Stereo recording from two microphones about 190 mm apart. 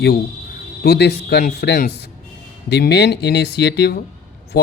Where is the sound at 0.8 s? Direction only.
60° left (ahead or behind).